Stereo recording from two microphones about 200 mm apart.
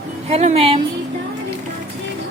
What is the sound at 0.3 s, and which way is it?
Speech, 30° right (ahead or behind).